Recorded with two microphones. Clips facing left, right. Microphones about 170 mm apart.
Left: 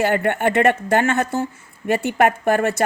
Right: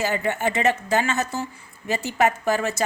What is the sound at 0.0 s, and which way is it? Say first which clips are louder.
Speech: left 5 dB; 60° left (ahead or behind).